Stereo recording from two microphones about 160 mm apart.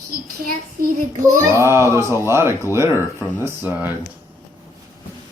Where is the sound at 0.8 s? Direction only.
65° right (ahead or behind).